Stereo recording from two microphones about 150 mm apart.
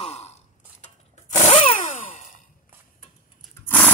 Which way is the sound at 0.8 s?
50° left (ahead or behind).